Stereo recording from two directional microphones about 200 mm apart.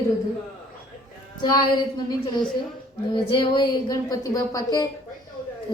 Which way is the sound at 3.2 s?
25° left (ahead or behind).